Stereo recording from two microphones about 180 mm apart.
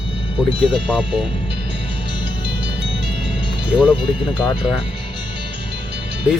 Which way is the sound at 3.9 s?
30° left (ahead or behind).